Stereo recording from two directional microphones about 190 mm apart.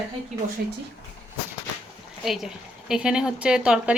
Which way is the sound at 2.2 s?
Centre (ahead or behind).